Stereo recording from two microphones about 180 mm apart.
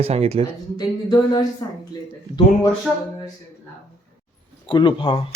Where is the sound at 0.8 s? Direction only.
20° left (ahead or behind).